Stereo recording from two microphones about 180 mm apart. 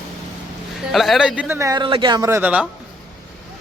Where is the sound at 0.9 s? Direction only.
Centre (ahead or behind).